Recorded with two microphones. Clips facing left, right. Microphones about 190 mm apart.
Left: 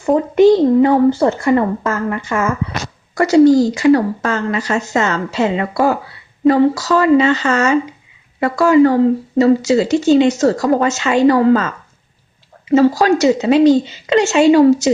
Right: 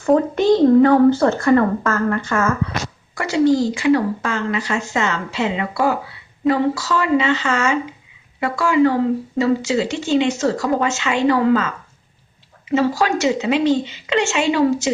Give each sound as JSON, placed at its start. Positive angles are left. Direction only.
{"t": 0.1, "sound": "speech", "side_deg": 15}
{"t": 3.2, "sound": "a woman's voice", "side_deg": 40}
{"t": 12.7, "sound": "a woman's voice", "side_deg": 40}